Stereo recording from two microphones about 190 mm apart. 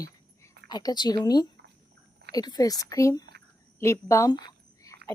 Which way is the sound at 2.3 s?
20° left (ahead or behind).